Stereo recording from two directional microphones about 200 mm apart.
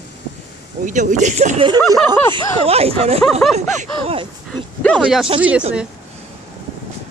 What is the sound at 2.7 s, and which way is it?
Speech, 30° right (ahead or behind).